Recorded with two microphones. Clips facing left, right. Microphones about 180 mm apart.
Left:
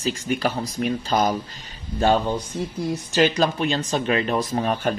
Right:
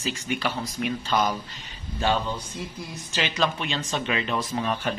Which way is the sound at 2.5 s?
55° left (ahead or behind).